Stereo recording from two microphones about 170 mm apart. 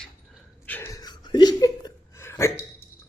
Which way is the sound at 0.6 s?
10° left (ahead or behind).